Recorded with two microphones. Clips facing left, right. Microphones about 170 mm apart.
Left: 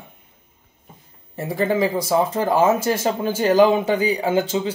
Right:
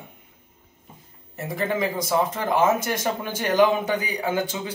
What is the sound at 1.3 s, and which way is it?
A man's voice, 30° left (ahead or behind).